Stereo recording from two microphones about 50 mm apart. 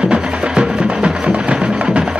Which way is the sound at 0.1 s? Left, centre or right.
Centre.